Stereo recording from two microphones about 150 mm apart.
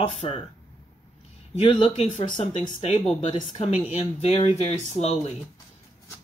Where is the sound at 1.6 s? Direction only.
45° left (ahead or behind).